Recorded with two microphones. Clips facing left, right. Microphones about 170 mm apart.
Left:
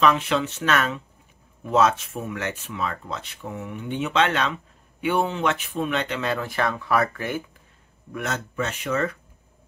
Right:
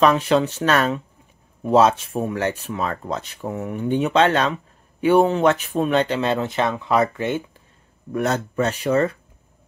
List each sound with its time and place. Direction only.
0.0 s speech: 40° right (ahead or behind); by 7.4 s 25° right (ahead or behind)
8.1 s speech: 35° right (ahead or behind)